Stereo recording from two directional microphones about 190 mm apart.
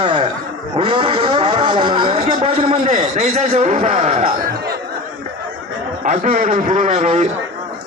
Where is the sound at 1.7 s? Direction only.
20° right (ahead or behind).